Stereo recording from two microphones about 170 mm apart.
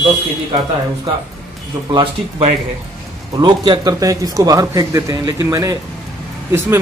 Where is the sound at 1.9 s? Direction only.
35° right (ahead or behind).